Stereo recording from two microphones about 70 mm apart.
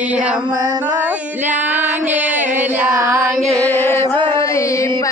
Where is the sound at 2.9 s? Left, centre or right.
Right.